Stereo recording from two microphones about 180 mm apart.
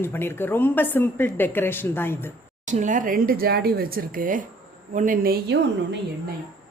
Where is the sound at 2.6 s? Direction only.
45° right (ahead or behind); by 6.0 s 65° right (ahead or behind).